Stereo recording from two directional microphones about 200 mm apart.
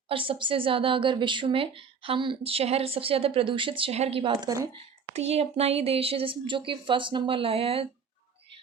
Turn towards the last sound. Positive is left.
turn(degrees=-30)  # may be behind; listen again after turning